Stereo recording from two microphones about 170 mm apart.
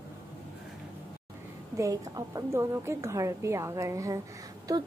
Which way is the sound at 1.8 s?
20° right (ahead or behind).